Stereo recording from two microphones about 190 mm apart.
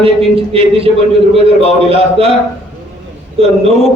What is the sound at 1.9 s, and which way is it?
Speech, 30° right (ahead or behind).